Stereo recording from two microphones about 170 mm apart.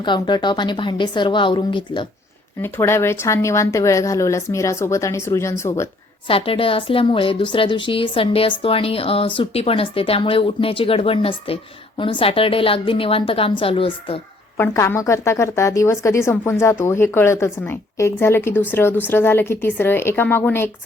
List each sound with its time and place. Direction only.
0.0 s a woman's voice: 25° left (ahead or behind)
2.6 s a woman's voice: 15° left (ahead or behind)
6.2 s a woman's voice: 30° left (ahead or behind)
14.6 s a woman's voice: 15° left (ahead or behind)